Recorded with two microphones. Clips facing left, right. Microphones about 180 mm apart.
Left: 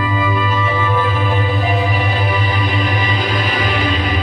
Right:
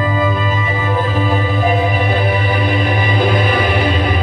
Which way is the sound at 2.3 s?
55° right (ahead or behind).